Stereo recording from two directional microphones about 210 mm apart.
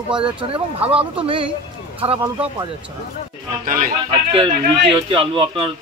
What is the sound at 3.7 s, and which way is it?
Speech, 40° right (ahead or behind).